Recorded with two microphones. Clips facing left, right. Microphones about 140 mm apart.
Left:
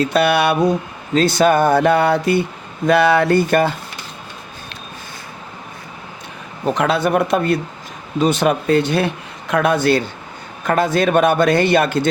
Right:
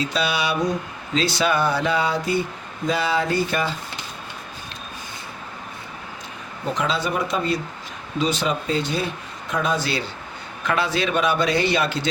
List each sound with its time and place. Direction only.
0.0 s speech: 60° left (ahead or behind)
6.7 s a man's voice: 60° left (ahead or behind)